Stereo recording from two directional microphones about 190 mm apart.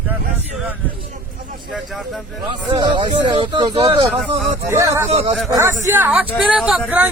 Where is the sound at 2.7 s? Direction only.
25° right (ahead or behind).